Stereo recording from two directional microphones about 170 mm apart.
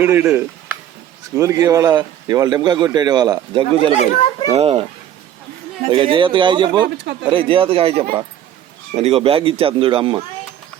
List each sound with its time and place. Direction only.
0.0 s a man's voice: 10° right (ahead or behind); by 3.9 s 30° right (ahead or behind)
3.9 s speech: 40° left (ahead or behind)
4.5 s speech: 35° right (ahead or behind)
5.9 s a man's voice: 30° right (ahead or behind)